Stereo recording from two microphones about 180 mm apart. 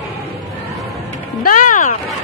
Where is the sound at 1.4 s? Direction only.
45° left (ahead or behind).